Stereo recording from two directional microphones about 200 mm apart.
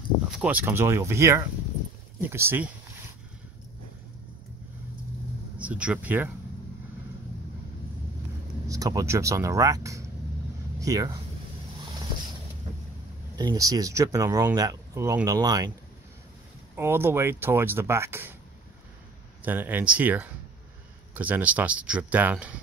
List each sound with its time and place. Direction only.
0.4 s speech: 10° right (ahead or behind)
5.6 s speech: 5° right (ahead or behind)
8.6 s speech: 15° right (ahead or behind)
13.4 s speech: 20° right (ahead or behind)
16.7 s speech: 10° right (ahead or behind)
19.4 s speech: 10° right (ahead or behind)